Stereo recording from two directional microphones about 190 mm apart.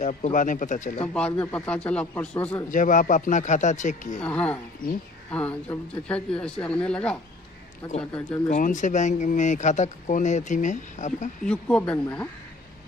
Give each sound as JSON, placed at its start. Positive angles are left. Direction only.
{"t": 0.0, "sound": "speech", "side_deg": 40}
{"t": 1.0, "sound": "a man's voice", "side_deg": 5}
{"t": 2.7, "sound": "speech", "side_deg": 45}
{"t": 4.2, "sound": "a man's voice", "side_deg": 5}
{"t": 8.5, "sound": "speech", "side_deg": 40}
{"t": 11.4, "sound": "speech", "side_deg": 5}